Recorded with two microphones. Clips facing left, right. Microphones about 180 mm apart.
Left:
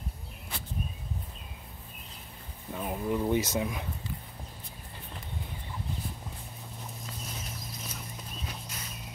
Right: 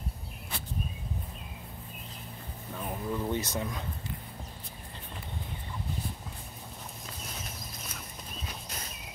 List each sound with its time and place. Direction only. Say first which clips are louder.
2.7 s speech: left 3 dB; 15° left (ahead or behind)